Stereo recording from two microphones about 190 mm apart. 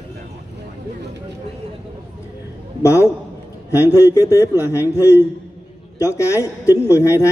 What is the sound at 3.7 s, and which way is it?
Speech, 10° right (ahead or behind).